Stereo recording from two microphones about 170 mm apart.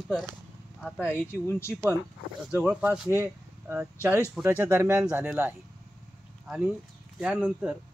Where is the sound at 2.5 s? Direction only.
5° right (ahead or behind).